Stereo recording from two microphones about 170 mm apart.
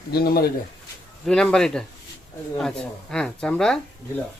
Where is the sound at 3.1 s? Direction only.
5° left (ahead or behind).